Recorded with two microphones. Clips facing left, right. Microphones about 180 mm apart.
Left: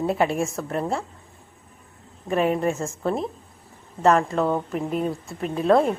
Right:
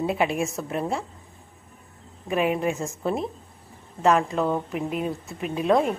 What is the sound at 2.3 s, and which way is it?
A woman's voice, 5° right (ahead or behind).